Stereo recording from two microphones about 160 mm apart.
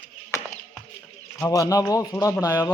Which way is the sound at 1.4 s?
20° left (ahead or behind).